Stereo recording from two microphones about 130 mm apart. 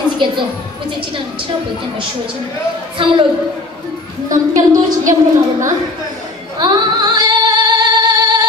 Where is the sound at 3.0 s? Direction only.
40° right (ahead or behind).